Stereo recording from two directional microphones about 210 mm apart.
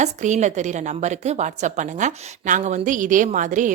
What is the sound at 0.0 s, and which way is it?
A woman's voice, 35° right (ahead or behind).